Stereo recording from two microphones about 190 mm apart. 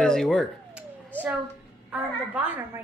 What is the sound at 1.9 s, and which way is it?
Speech, 5° right (ahead or behind).